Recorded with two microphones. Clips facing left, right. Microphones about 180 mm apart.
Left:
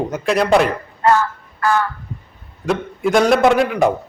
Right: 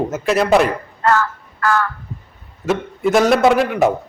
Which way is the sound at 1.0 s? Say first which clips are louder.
Left 2 dB; 15° left (ahead or behind).